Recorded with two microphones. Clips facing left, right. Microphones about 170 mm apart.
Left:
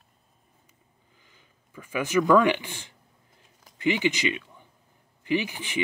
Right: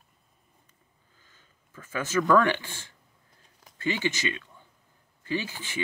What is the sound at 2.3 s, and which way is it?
Speech, 15° left (ahead or behind).